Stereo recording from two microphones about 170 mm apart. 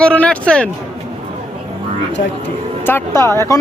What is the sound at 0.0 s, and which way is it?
Speech, 5° left (ahead or behind).